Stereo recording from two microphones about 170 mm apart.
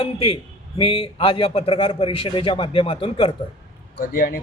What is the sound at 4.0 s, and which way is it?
Speech, 55° left (ahead or behind).